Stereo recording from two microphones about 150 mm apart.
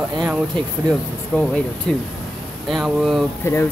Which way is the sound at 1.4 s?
5° left (ahead or behind).